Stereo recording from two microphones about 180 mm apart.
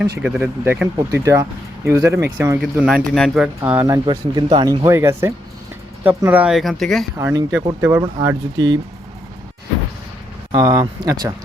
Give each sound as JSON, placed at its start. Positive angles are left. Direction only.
{"t": 0.2, "sound": "speech", "side_deg": -10}
{"t": 2.6, "sound": "speech", "side_deg": -5}
{"t": 7.2, "sound": "speech", "side_deg": -15}
{"t": 10.5, "sound": "speech", "side_deg": -20}